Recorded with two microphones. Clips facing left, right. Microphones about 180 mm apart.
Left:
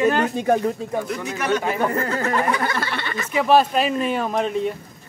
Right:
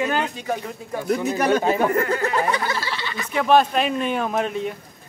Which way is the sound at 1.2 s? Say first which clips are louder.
Right 5 dB; 35° right (ahead or behind).